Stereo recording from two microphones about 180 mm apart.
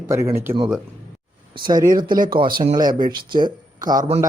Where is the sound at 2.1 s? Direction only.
50° right (ahead or behind).